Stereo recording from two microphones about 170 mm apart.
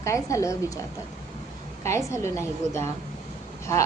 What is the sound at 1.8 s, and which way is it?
A woman's voice, 15° left (ahead or behind).